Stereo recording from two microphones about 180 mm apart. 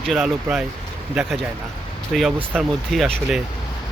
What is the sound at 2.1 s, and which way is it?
Speech, centre (ahead or behind).